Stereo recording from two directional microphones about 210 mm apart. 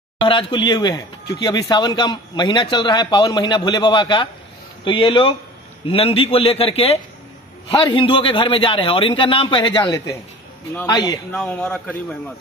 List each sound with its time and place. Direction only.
0.2 s speech: 25° left (ahead or behind)
11.3 s speech: 5° left (ahead or behind)